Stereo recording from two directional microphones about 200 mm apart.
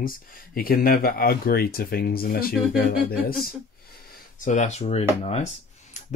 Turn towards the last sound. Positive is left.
turn(degrees=35)  # may be behind; listen again after turning